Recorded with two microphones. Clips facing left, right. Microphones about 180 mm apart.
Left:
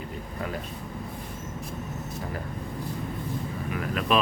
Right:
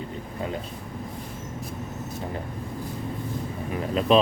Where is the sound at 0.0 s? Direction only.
25° right (ahead or behind).